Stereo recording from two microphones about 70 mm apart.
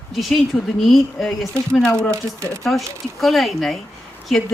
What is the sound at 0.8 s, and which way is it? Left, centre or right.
A woman's voice, centre.